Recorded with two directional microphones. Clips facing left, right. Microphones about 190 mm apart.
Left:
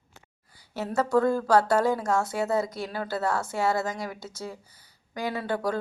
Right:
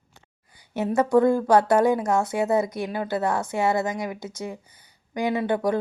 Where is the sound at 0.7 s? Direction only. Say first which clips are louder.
Right 5 dB; 20° right (ahead or behind).